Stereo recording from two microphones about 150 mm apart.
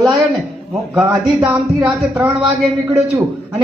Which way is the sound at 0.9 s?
20° right (ahead or behind).